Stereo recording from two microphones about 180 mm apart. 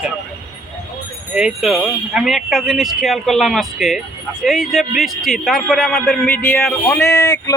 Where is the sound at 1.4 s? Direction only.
5° right (ahead or behind).